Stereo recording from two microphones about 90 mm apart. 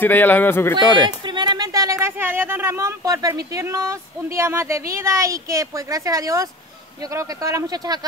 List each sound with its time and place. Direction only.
0.0 s a man's voice: 20° left (ahead or behind)
1.2 s a sound: 55° right (ahead or behind); by 2.9 s 30° right (ahead or behind)
3.0 s speech: 40° right (ahead or behind)
7.6 s speech: 45° right (ahead or behind)